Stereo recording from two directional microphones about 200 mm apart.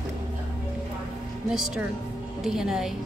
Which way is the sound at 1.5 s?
Centre (ahead or behind).